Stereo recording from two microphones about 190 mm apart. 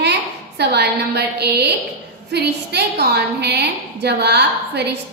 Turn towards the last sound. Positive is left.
turn(degrees=-60)  # may be behind; listen again after turning